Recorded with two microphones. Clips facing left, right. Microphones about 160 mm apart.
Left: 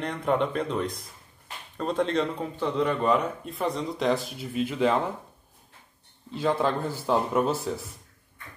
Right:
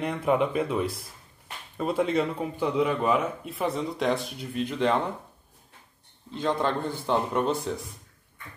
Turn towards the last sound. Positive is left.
turn(degrees=0)  # may be behind; listen again after turning